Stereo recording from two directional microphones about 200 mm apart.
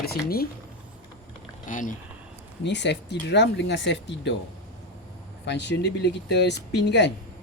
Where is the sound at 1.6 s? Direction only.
40° left (ahead or behind).